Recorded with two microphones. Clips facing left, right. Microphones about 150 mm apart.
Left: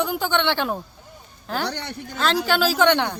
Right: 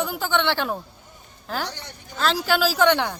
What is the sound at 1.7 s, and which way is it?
Speech, 70° left (ahead or behind).